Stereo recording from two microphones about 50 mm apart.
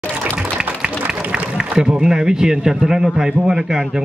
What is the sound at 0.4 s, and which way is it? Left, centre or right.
A man's voice, centre.